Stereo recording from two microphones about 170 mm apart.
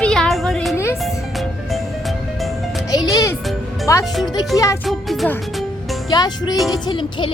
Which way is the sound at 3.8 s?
20° left (ahead or behind).